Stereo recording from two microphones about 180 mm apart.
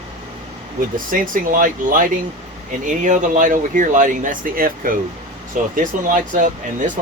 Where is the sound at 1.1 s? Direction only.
50° right (ahead or behind).